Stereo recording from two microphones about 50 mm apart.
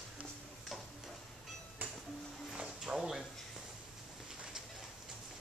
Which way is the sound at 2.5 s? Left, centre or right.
Centre.